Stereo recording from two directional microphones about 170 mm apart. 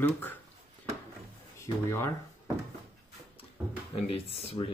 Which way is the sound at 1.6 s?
15° left (ahead or behind).